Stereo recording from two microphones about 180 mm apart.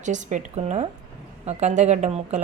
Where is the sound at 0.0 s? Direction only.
40° right (ahead or behind).